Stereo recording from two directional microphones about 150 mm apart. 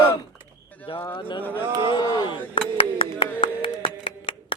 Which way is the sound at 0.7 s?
10° left (ahead or behind).